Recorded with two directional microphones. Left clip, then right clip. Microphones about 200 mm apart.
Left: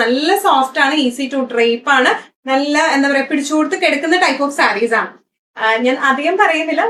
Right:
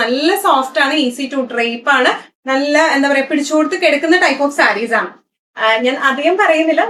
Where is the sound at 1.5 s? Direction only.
15° right (ahead or behind).